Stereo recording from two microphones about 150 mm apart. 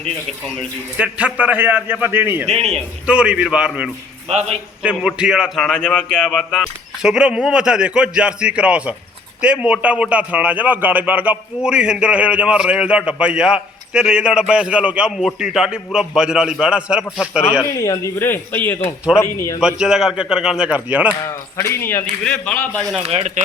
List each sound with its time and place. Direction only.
0.9 s a man's voice: 5° right (ahead or behind)
17.6 s speech: 20° left (ahead or behind)
19.5 s a man's voice: 5° right (ahead or behind)
21.6 s a man's voice: 15° left (ahead or behind)
23.0 s speech: 45° right (ahead or behind)